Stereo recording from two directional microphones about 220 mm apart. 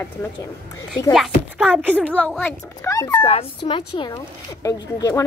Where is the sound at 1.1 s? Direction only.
Centre (ahead or behind).